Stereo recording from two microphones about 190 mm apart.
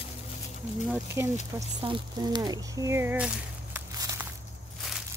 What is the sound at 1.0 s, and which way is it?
Speech, 15° right (ahead or behind).